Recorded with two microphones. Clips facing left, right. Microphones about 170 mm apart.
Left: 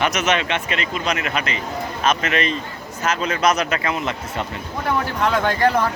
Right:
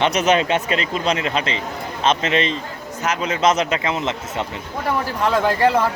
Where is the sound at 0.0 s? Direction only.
30° right (ahead or behind).